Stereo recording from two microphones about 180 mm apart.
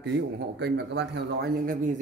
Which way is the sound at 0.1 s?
70° right (ahead or behind).